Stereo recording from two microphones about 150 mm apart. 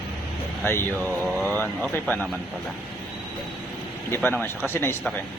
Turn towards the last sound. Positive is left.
turn(degrees=15)  # may be behind; listen again after turning